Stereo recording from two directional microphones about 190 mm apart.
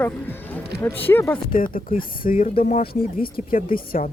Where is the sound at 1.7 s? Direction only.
50° left (ahead or behind).